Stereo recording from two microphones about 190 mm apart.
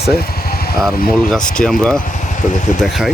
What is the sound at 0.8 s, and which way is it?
Speech, centre (ahead or behind).